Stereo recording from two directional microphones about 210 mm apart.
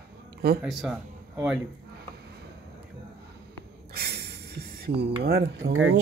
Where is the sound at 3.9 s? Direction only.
50° right (ahead or behind).